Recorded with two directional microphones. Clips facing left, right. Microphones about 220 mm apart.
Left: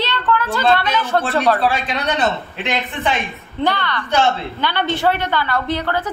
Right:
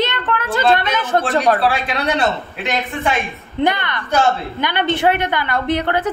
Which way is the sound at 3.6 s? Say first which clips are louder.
Right 2 dB; 20° right (ahead or behind).